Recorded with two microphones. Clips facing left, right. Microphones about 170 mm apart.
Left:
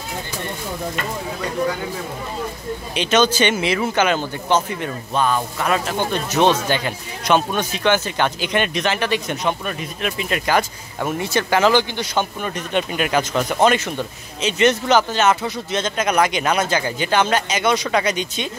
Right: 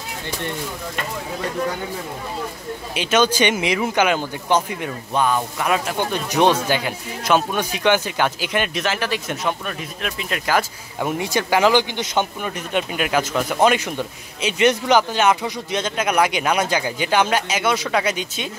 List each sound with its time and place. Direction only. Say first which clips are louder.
2.9 s speech: left 1 dB; 10° right (ahead or behind)
11.1 s speech: left 1 dB; 15° right (ahead or behind)
12.4 s speech: left 1 dB; 5° right (ahead or behind)